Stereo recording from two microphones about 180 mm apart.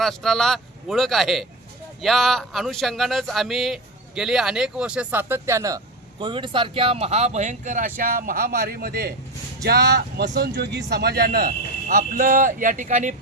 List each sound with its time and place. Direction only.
0.0 s a man's voice: centre (ahead or behind); by 13.1 s 45° right (ahead or behind)